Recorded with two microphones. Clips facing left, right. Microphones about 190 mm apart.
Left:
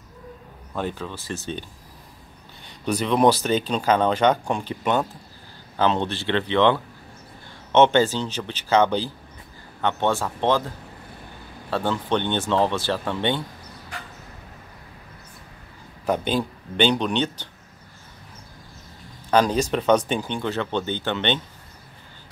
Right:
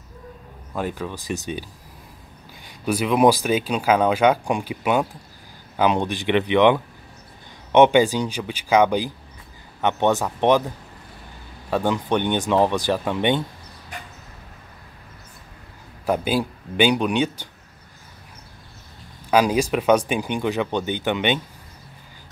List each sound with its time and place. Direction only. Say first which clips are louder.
0.7 s speech: right 2 dB; 10° right (ahead or behind)
11.7 s speech: right 2 dB; 15° right (ahead or behind)
16.1 s speech: right 1 dB; 10° right (ahead or behind)
19.3 s speech: right 1 dB; 10° right (ahead or behind)